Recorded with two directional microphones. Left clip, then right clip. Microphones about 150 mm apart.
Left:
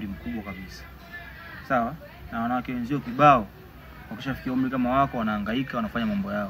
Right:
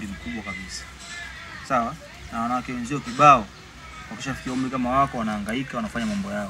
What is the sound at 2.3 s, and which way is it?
Speech, 35° left (ahead or behind).